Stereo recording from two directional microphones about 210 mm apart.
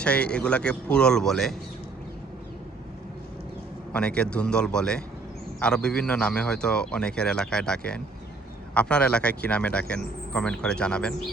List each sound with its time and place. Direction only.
0.0 s a man's voice: 5° left (ahead or behind)
3.9 s a man's voice: 5° left (ahead or behind)